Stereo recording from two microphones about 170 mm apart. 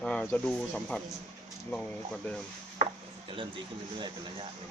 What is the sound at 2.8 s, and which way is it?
Chopping, 30° right (ahead or behind).